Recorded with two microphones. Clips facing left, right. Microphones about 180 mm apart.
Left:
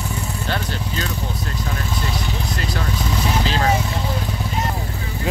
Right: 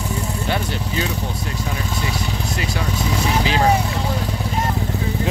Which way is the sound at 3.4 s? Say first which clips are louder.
Right 4 dB; 15° right (ahead or behind).